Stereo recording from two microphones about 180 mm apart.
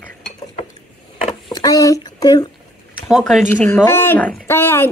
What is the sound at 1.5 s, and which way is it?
Speech, 20° left (ahead or behind).